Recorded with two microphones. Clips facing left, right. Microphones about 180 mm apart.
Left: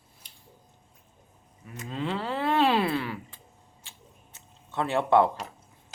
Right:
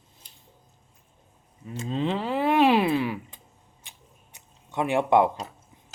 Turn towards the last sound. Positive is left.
turn(degrees=-15)  # may be behind; listen again after turning